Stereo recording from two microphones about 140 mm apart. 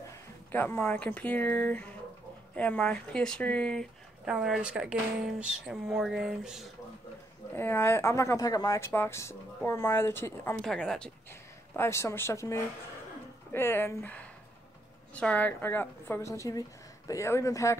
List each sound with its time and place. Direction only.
0.5 s speech: 15° left (ahead or behind)
4.3 s speech: 5° right (ahead or behind)
7.5 s speech: 15° left (ahead or behind)
10.5 s speech: 5° left (ahead or behind)
11.7 s speech: 20° left (ahead or behind)